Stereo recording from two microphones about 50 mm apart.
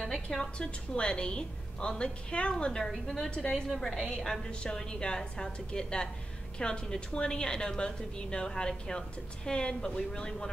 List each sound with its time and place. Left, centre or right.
0.1 s a woman's voice: centre
3.6 s a woman's voice: centre